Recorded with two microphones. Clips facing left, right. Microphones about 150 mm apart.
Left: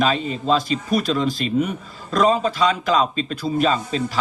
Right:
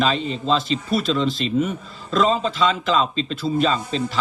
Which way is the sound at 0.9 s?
45° left (ahead or behind).